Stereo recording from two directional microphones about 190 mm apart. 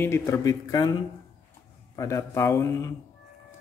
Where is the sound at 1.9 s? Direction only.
15° left (ahead or behind).